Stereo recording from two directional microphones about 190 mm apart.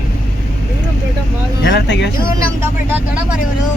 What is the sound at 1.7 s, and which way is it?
Speech, 65° left (ahead or behind).